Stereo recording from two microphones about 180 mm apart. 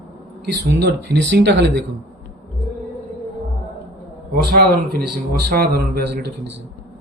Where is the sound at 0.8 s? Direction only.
60° right (ahead or behind).